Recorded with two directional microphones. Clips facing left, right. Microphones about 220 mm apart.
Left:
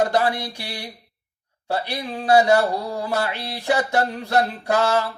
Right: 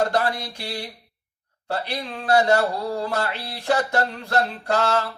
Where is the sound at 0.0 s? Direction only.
20° left (ahead or behind).